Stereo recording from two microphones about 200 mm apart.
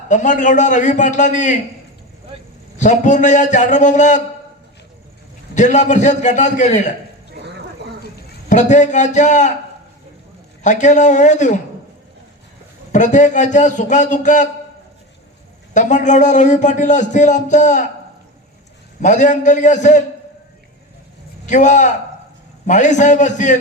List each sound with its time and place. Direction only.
0.1 s a man's voice: 40° left (ahead or behind)
2.7 s a man's voice: 40° left (ahead or behind)
5.5 s a man's voice: 35° left (ahead or behind)
8.4 s a man's voice: 35° left (ahead or behind)
10.6 s a man's voice: 35° left (ahead or behind)
12.9 s a man's voice: 40° left (ahead or behind)
15.7 s a man's voice: 35° left (ahead or behind)
19.0 s a man's voice: 40° left (ahead or behind)
21.4 s a man's voice: 40° left (ahead or behind)